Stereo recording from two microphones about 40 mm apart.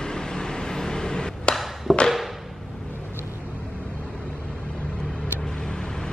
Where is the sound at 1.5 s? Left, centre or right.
Centre.